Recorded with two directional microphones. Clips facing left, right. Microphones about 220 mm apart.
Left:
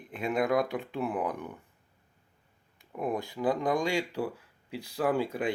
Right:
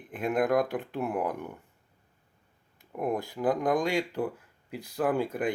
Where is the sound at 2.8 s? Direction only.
10° right (ahead or behind).